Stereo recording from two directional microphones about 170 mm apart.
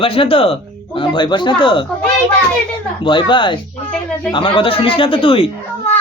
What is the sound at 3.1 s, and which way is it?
Speech, 30° left (ahead or behind).